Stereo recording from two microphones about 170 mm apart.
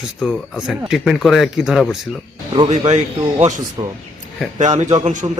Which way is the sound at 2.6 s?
40° right (ahead or behind).